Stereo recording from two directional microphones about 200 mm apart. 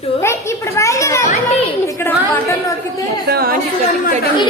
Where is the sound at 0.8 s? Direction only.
15° left (ahead or behind).